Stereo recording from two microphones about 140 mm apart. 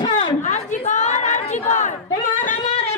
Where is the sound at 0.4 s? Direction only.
60° left (ahead or behind).